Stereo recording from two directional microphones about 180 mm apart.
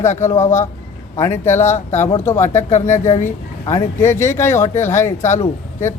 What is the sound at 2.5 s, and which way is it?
Speech, 40° left (ahead or behind).